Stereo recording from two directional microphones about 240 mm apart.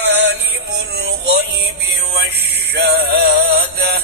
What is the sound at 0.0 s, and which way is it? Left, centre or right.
Music, right.